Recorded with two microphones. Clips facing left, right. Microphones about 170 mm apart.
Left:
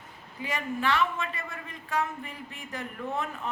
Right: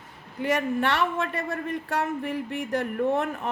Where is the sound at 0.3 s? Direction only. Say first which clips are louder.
Right 8 dB; 70° right (ahead or behind).